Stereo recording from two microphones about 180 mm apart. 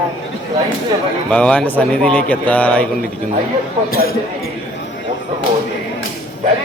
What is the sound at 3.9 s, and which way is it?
Speech, 55° left (ahead or behind).